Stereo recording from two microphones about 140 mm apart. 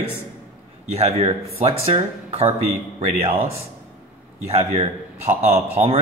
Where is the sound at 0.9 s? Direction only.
45° right (ahead or behind).